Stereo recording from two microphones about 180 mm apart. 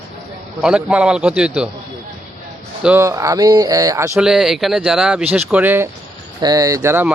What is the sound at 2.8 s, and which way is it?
Speech, 15° right (ahead or behind).